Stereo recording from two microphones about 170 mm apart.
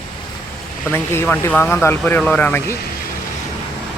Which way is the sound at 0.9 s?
15° left (ahead or behind).